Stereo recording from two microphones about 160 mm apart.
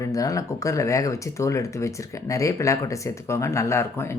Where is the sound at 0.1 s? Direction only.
20° left (ahead or behind).